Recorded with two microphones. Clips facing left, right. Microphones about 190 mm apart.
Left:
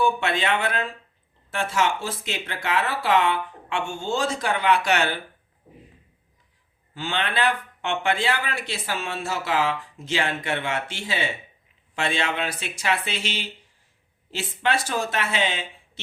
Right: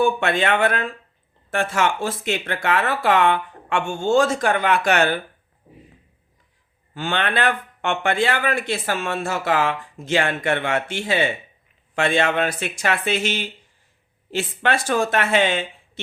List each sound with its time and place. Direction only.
0.0 s a man's voice: 55° right (ahead or behind)
6.9 s a man's voice: 55° right (ahead or behind)